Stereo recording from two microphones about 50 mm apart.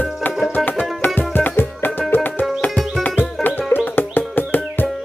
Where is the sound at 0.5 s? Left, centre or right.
Left.